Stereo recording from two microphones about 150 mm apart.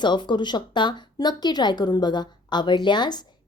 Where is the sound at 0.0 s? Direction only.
30° left (ahead or behind).